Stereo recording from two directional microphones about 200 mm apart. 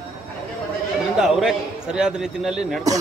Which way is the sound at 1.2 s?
Centre (ahead or behind).